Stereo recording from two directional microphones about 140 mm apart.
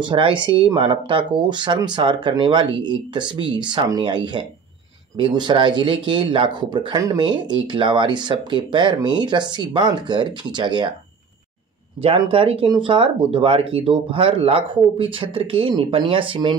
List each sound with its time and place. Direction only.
0.0 s speech: 35° right (ahead or behind)
12.2 s speech: 40° right (ahead or behind)